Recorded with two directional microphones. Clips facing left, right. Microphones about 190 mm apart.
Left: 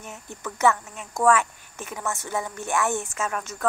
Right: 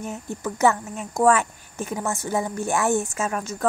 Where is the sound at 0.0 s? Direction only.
35° right (ahead or behind).